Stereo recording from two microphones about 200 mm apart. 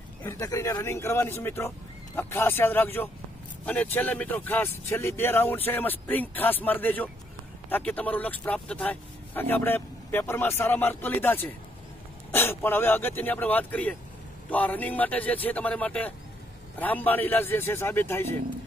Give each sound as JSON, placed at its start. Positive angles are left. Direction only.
{"t": 0.2, "sound": "speech", "side_deg": 15}